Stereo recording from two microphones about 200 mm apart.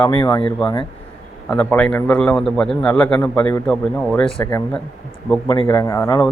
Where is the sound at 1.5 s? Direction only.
5° left (ahead or behind).